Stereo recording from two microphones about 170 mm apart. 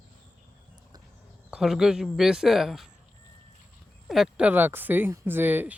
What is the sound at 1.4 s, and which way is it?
Speech, 5° right (ahead or behind).